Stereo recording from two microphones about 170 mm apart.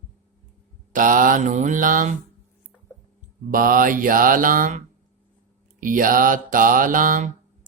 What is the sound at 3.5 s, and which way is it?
Mantra, 55° right (ahead or behind).